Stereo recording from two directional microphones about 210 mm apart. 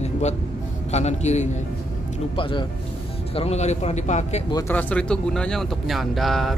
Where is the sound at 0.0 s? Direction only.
30° left (ahead or behind).